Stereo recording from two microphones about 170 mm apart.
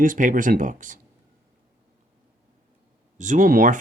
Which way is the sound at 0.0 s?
50° right (ahead or behind).